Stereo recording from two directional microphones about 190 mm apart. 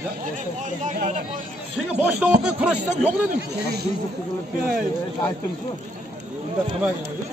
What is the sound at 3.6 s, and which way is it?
Speech, 60° right (ahead or behind).